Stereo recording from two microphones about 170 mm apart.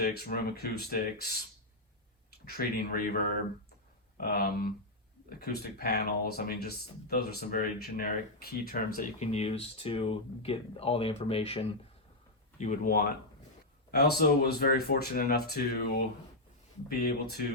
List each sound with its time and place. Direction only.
0.0 s speech: 65° left (ahead or behind)
2.6 s speech: 65° left (ahead or behind)
4.2 s speech: 60° left (ahead or behind)
9.0 s speech: 40° left (ahead or behind)
12.5 s speech: 50° left (ahead or behind)
13.9 s speech: 65° left (ahead or behind)